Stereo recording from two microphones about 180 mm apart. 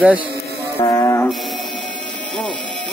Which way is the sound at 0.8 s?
20° left (ahead or behind).